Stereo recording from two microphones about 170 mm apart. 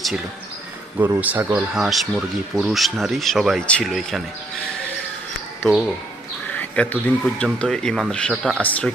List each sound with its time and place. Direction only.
0.9 s speech: 10° right (ahead or behind)
5.6 s speech: 5° left (ahead or behind)